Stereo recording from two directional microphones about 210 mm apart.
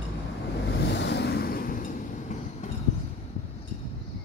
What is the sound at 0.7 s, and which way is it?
Waves, 55° left (ahead or behind).